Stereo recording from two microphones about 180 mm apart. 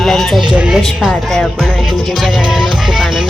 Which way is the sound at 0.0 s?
Centre (ahead or behind).